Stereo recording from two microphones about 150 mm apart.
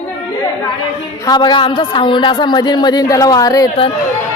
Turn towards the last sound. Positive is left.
turn(degrees=25)  # may be behind; listen again after turning